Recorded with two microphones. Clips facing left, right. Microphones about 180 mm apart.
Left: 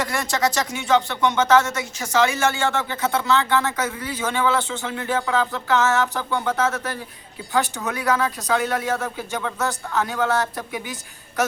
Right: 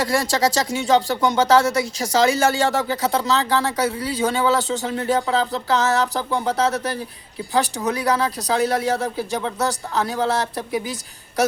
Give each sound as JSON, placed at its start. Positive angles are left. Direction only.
{"t": 0.0, "sound": "speech", "side_deg": -30}